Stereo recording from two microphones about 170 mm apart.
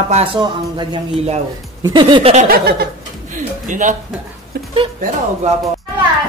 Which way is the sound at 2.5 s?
65° right (ahead or behind).